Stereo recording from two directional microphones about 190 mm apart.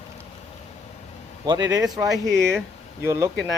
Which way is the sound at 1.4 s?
20° right (ahead or behind).